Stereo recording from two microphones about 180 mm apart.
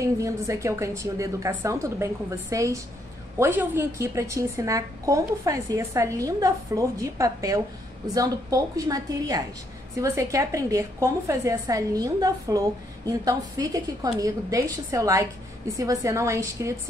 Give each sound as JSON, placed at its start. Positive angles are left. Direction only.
{"t": 0.0, "sound": "a woman's voice", "side_deg": -15}